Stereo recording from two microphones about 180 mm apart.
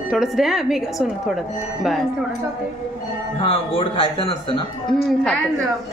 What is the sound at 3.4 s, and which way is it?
Speech, 30° left (ahead or behind).